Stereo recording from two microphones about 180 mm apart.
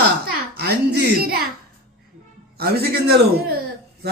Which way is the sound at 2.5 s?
60° right (ahead or behind).